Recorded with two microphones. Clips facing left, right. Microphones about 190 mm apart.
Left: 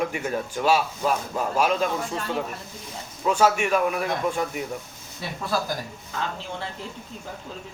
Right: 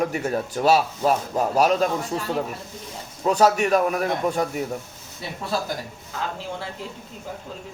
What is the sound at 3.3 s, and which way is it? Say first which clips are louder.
Speech: right 3 dB; 40° right (ahead or behind).